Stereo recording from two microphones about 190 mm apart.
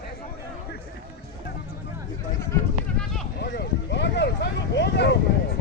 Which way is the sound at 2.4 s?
10° left (ahead or behind).